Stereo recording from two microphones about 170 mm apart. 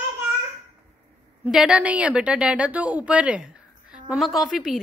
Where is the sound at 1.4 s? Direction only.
5° right (ahead or behind).